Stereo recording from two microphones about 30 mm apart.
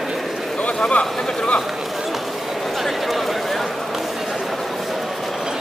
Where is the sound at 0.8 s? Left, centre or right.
Left.